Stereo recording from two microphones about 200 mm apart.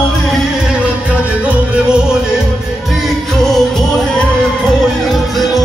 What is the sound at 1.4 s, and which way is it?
Music, 5° right (ahead or behind).